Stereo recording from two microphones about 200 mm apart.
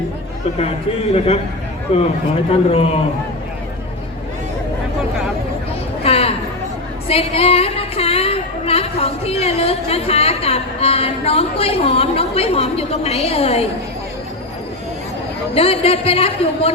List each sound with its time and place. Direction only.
1.9 s speech: 30° left (ahead or behind)
6.0 s a sound: 30° left (ahead or behind)
7.1 s speech: 30° left (ahead or behind)
15.5 s speech: 30° left (ahead or behind)